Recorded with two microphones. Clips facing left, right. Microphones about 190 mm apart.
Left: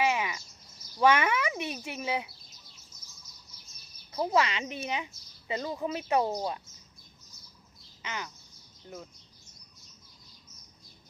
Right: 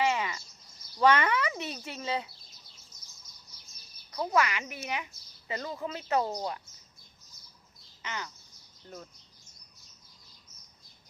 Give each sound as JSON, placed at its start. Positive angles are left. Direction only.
{"t": 0.0, "sound": "bird", "side_deg": 10}
{"t": 0.9, "sound": "speech", "side_deg": 10}
{"t": 4.1, "sound": "a woman's voice", "side_deg": 25}
{"t": 8.0, "sound": "crow", "side_deg": 15}